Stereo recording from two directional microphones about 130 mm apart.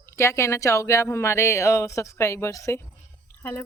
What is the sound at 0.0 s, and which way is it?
A woman's voice, 20° left (ahead or behind).